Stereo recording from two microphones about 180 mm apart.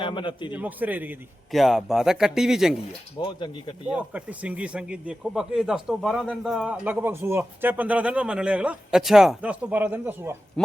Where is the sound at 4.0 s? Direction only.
5° right (ahead or behind).